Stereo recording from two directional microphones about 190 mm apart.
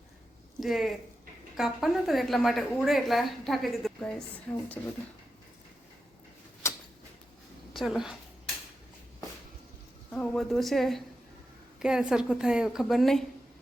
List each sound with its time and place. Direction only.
0.6 s a woman's voice: centre (ahead or behind)
7.7 s speech: centre (ahead or behind)
10.1 s a woman's voice: centre (ahead or behind)